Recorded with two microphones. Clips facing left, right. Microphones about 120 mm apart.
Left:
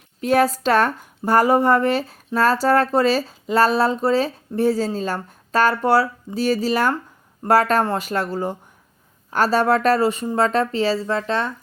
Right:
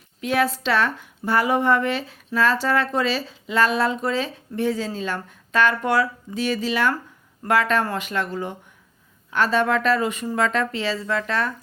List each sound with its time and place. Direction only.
0.2 s speech: 40° left (ahead or behind)